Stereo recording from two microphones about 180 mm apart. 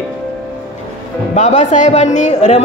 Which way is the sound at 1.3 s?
40° left (ahead or behind).